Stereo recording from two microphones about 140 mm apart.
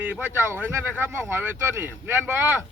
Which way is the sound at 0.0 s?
15° right (ahead or behind).